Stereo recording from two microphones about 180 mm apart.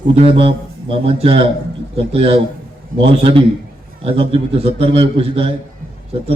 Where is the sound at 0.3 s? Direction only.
30° right (ahead or behind).